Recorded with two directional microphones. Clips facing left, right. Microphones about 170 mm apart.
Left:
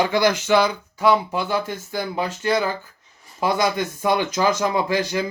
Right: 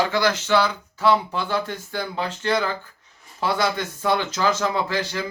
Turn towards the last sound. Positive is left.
turn(degrees=15)  # may be behind; listen again after turning